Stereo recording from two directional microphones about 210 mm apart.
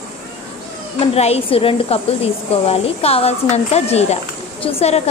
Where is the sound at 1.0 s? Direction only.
30° left (ahead or behind).